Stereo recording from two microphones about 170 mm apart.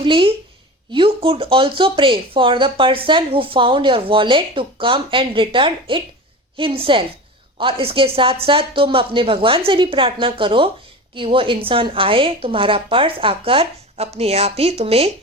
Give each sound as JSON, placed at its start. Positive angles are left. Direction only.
{"t": 0.0, "sound": "a woman's voice", "side_deg": -30}